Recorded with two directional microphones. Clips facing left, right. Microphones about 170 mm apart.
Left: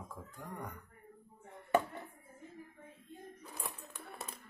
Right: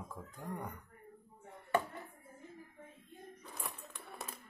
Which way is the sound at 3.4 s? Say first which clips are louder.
Right 1 dB; centre (ahead or behind).